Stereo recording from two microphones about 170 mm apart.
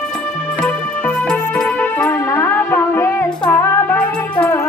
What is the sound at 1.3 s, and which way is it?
Music, 5° left (ahead or behind).